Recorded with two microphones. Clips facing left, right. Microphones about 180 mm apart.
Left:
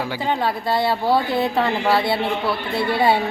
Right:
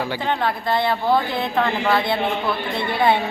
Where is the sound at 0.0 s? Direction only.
10° left (ahead or behind).